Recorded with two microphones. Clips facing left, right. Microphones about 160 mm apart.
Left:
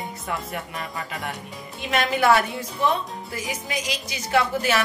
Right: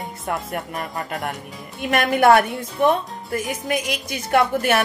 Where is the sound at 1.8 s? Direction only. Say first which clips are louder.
Right 4 dB; 55° right (ahead or behind).